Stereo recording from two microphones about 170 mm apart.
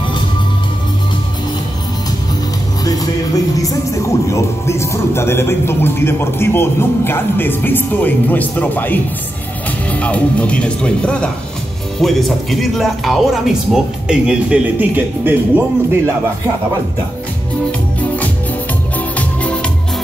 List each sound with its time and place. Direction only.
2.8 s a man's voice: 20° left (ahead or behind); by 16.0 s 10° right (ahead or behind)
17.6 s music: 10° left (ahead or behind)